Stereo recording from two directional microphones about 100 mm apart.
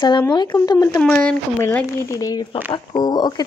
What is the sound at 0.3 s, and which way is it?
Speech, 50° left (ahead or behind).